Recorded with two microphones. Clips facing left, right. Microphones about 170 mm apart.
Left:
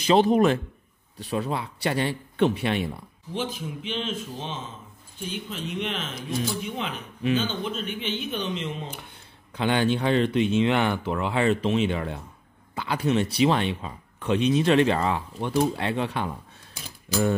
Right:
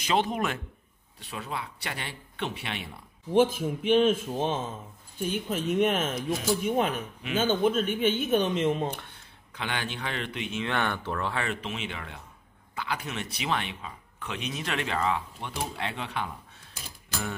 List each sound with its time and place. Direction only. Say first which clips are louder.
0.0 s speech: left 8 dB; 35° left (ahead or behind)
3.3 s speech: right 8 dB; 50° right (ahead or behind)
9.5 s speech: left 11 dB; 30° left (ahead or behind)
10.7 s speech: left 6 dB; 10° left (ahead or behind)
11.4 s speech: left 11 dB; 35° left (ahead or behind)